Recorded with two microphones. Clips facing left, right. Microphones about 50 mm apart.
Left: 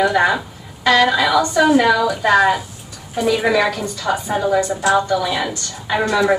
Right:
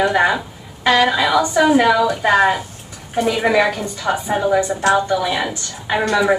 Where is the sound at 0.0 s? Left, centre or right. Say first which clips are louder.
Even; centre.